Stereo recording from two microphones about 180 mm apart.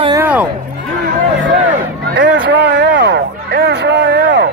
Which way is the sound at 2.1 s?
60° right (ahead or behind).